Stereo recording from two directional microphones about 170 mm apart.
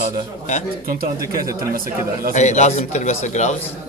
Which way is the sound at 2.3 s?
45° left (ahead or behind).